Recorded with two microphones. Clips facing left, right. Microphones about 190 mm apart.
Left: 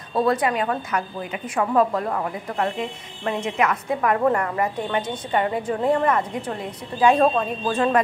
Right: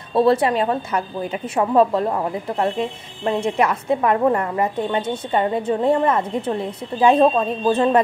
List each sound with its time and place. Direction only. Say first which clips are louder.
0.1 s speech: right 5 dB; 30° right (ahead or behind)